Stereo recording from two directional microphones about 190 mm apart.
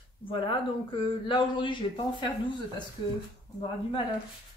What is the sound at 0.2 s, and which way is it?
Speech, 25° left (ahead or behind).